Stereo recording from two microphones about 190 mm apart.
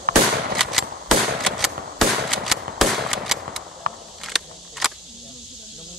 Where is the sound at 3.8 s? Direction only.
50° right (ahead or behind).